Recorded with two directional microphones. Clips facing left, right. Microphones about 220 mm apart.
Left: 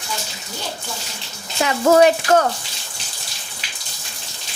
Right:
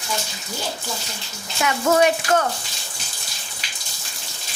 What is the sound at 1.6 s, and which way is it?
Speech, 30° left (ahead or behind).